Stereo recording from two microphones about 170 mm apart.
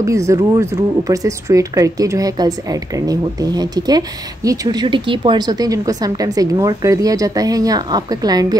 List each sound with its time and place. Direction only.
0.0 s speech: 20° right (ahead or behind)